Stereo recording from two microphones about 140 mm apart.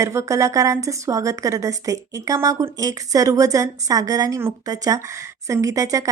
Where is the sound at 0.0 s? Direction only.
20° right (ahead or behind).